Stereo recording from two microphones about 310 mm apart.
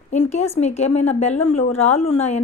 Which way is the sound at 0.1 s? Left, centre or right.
Left.